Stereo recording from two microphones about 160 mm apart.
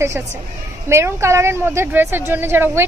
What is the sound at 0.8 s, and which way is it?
A woman's voice, 15° right (ahead or behind).